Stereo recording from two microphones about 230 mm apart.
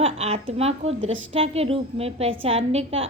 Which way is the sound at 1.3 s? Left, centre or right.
Right.